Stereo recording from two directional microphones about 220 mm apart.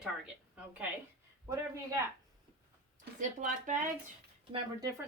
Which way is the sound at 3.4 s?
35° right (ahead or behind).